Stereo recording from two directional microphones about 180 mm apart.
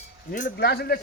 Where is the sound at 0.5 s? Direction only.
60° left (ahead or behind).